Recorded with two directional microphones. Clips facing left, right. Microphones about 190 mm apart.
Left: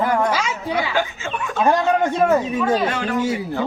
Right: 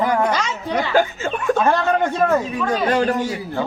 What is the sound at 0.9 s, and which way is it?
Speech, 45° right (ahead or behind).